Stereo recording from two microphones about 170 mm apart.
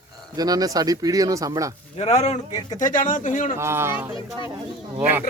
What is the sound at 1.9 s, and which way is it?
Speech, 40° left (ahead or behind).